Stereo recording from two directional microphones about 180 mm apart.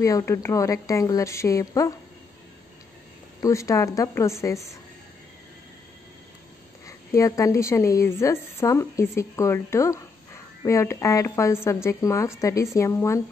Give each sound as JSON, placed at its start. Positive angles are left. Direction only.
{"t": 0.0, "sound": "a woman's voice", "side_deg": 15}
{"t": 3.4, "sound": "a woman's voice", "side_deg": 15}
{"t": 7.1, "sound": "a woman's voice", "side_deg": 15}